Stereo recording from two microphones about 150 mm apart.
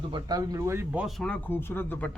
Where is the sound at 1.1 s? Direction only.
5° left (ahead or behind).